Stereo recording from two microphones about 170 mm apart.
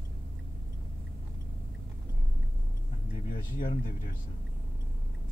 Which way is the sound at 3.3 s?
55° left (ahead or behind).